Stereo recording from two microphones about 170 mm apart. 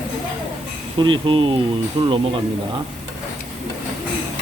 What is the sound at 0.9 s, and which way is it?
Speech, 30° right (ahead or behind).